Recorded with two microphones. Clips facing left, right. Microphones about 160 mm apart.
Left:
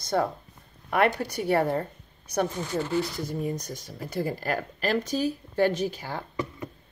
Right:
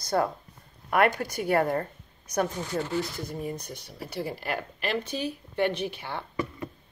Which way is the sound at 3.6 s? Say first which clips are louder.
Left 2 dB; 45° left (ahead or behind).